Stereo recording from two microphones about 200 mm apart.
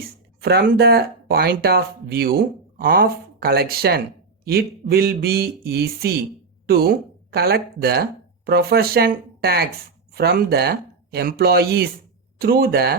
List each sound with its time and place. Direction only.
0.4 s speech: 50° right (ahead or behind)